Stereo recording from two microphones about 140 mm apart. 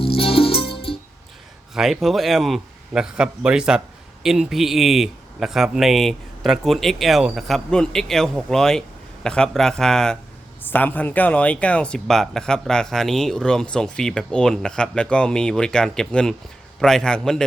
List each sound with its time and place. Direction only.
0.0 s music: 40° left (ahead or behind)
1.7 s a man's voice: centre (ahead or behind)